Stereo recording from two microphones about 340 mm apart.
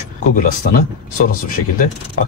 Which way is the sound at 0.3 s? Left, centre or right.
Left.